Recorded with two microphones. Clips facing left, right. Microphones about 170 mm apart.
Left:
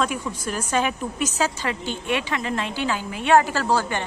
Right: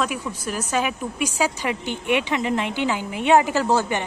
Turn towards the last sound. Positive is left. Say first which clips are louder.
# right 2 dB
turn(degrees=-20)  # may be behind; listen again after turning